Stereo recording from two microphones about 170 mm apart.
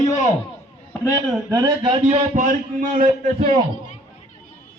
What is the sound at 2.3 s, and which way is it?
Speech, 50° right (ahead or behind).